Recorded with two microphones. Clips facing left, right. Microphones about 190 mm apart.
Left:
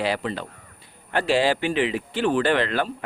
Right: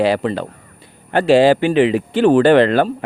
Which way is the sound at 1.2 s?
60° right (ahead or behind).